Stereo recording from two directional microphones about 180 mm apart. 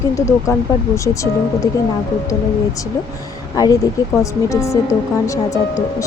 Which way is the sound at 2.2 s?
20° left (ahead or behind).